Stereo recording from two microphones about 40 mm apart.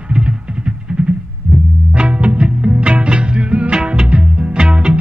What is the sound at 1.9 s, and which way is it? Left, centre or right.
Music, right.